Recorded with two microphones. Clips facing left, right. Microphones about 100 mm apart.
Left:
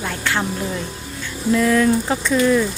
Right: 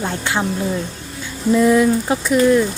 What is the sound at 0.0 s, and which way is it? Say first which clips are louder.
Speech: right 2 dB; 20° right (ahead or behind).